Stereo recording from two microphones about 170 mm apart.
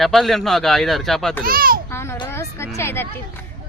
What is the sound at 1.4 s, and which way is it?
Speech, 60° right (ahead or behind).